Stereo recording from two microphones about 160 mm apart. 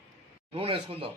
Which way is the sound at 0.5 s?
35° right (ahead or behind).